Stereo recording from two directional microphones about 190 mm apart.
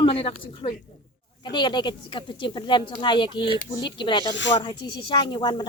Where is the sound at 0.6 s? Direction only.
25° left (ahead or behind).